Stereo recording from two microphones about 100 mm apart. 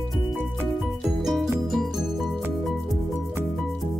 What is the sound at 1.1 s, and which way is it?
Music, centre (ahead or behind).